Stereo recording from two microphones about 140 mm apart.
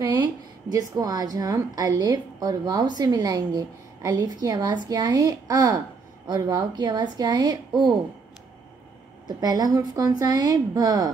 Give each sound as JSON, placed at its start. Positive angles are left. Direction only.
{"t": 0.7, "sound": "a woman's voice", "side_deg": -25}
{"t": 9.4, "sound": "a woman's voice", "side_deg": -25}